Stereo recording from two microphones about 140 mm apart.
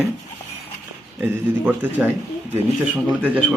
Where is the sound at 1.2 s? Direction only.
10° right (ahead or behind).